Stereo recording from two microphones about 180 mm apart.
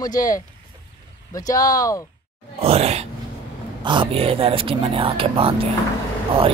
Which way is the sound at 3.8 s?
25° right (ahead or behind).